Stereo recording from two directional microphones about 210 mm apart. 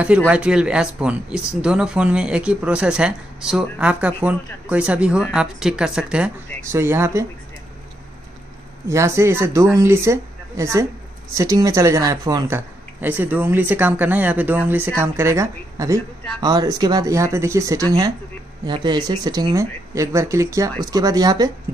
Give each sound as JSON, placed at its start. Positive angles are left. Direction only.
{"t": 0.3, "sound": "speech", "side_deg": -5}
{"t": 8.8, "sound": "speech", "side_deg": -15}